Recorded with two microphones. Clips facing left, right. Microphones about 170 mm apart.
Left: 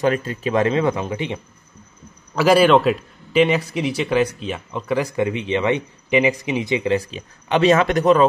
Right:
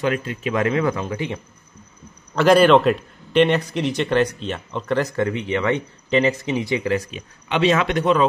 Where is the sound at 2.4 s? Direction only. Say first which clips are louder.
Right 1 dB; 5° left (ahead or behind).